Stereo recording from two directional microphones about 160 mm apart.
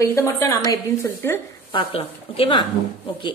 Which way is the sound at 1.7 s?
35° left (ahead or behind).